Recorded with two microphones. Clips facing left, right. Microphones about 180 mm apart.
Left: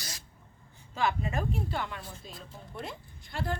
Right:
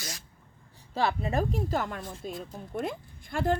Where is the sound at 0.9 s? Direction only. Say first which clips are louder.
Right 3 dB; 35° right (ahead or behind).